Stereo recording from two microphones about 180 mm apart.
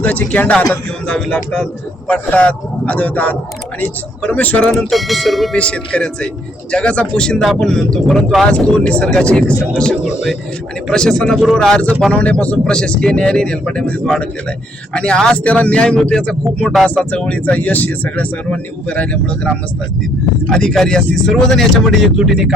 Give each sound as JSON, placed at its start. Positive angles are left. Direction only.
{"t": 0.0, "sound": "speech", "side_deg": 10}